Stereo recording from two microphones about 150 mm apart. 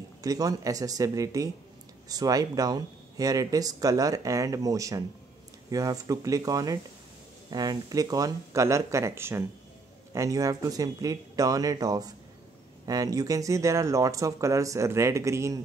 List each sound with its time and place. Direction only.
0.2 s speech: 25° right (ahead or behind)